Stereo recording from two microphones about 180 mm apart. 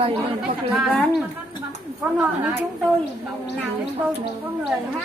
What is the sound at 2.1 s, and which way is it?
Speech, 10° right (ahead or behind).